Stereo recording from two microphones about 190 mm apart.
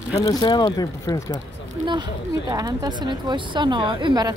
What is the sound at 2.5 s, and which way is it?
A woman's voice, 20° right (ahead or behind).